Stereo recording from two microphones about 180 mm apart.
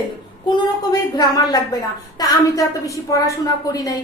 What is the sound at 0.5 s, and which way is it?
A woman's voice, 20° left (ahead or behind).